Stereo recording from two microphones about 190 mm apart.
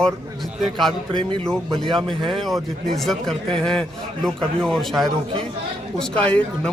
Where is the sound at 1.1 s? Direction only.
25° right (ahead or behind).